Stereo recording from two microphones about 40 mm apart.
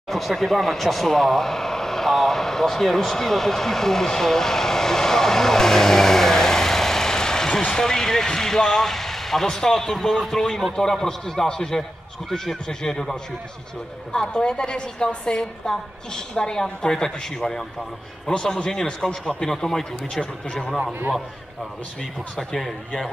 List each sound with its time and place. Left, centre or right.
0.1 s a woman's voice: centre